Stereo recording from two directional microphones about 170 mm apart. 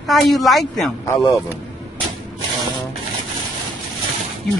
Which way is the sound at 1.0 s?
15° left (ahead or behind).